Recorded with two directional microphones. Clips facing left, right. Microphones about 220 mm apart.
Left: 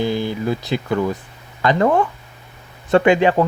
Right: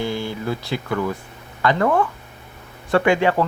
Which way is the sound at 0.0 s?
15° left (ahead or behind).